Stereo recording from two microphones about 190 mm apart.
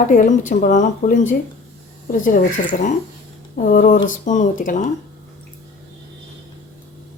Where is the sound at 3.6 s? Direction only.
45° left (ahead or behind).